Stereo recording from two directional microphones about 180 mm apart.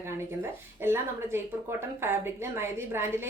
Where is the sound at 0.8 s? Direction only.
15° right (ahead or behind).